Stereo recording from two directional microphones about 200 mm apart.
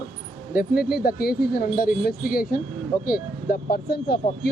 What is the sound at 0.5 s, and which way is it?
Speech, 50° left (ahead or behind).